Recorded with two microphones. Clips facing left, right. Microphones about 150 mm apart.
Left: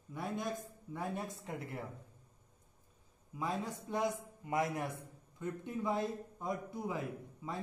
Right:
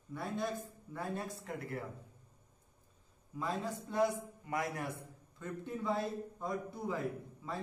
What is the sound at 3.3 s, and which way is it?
Speech, 15° left (ahead or behind).